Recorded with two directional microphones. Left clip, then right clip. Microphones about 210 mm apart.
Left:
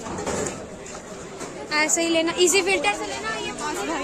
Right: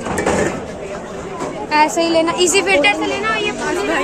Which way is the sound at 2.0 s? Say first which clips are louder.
Right 6 dB; 40° left (ahead or behind).